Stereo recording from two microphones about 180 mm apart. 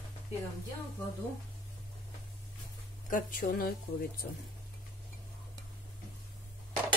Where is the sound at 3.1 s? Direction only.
55° left (ahead or behind).